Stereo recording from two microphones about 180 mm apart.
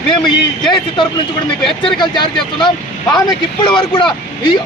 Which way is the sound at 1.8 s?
25° left (ahead or behind).